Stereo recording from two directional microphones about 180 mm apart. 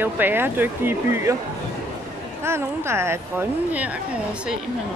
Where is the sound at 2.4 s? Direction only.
15° right (ahead or behind).